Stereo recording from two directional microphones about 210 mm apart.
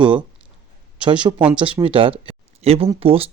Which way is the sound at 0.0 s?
25° right (ahead or behind).